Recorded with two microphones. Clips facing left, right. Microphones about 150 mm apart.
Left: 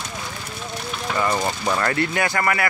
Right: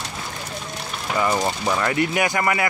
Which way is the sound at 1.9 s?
15° right (ahead or behind).